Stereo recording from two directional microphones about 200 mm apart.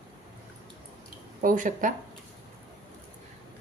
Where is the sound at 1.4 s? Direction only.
40° right (ahead or behind).